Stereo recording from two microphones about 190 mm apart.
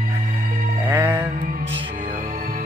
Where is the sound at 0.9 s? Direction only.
10° right (ahead or behind).